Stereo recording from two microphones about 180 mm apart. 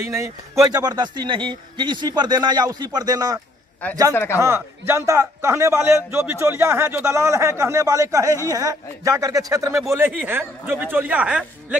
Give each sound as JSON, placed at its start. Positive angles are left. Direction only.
{"t": 0.1, "sound": "speech", "side_deg": -15}
{"t": 4.1, "sound": "speech", "side_deg": 10}
{"t": 4.4, "sound": "a man's voice", "side_deg": -15}